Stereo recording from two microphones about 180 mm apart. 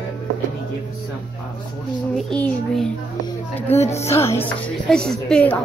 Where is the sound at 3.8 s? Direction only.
35° left (ahead or behind).